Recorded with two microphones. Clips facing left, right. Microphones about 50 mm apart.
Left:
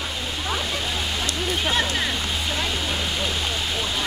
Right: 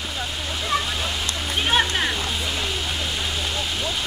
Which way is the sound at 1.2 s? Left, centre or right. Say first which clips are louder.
Left 2 dB; right.